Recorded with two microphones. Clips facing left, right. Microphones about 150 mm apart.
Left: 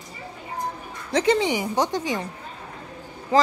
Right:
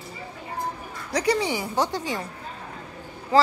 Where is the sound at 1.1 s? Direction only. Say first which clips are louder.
Left 3 dB; 25° left (ahead or behind).